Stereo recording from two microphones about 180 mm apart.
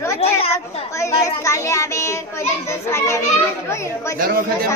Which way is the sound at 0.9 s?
15° left (ahead or behind).